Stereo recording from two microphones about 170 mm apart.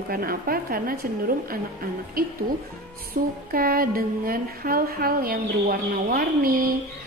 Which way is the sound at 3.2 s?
60° right (ahead or behind).